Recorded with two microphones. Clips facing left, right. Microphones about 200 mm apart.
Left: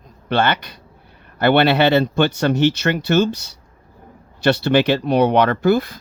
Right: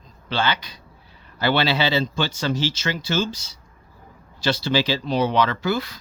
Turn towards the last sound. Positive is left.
turn(degrees=55)  # may be behind; listen again after turning